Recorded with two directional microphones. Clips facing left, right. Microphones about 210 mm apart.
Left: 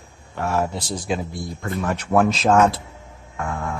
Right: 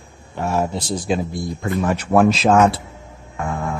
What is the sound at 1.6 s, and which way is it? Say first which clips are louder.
Speech: right 4 dB; 15° right (ahead or behind).